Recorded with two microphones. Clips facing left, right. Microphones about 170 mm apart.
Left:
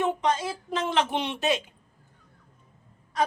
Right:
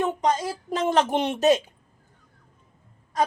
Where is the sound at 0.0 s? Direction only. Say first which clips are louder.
Right 2 dB; 40° right (ahead or behind).